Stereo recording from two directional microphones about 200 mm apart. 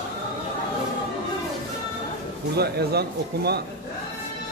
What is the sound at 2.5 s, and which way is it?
Speech, 55° right (ahead or behind).